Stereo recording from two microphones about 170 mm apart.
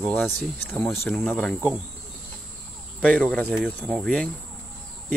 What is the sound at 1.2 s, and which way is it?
Speech, centre (ahead or behind).